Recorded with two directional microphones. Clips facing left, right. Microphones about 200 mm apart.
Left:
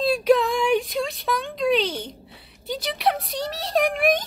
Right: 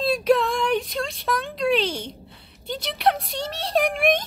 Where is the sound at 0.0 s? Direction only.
Centre (ahead or behind).